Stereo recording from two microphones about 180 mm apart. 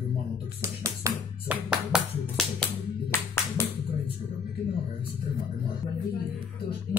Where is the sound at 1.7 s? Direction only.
Centre (ahead or behind).